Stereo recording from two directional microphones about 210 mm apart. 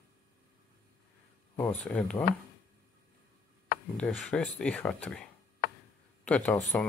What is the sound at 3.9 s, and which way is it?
Speech, centre (ahead or behind).